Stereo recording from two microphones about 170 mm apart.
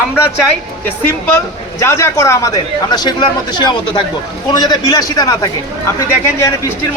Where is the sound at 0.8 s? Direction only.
15° left (ahead or behind).